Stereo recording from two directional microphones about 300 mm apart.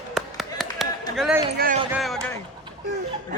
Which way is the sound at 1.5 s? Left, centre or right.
Right.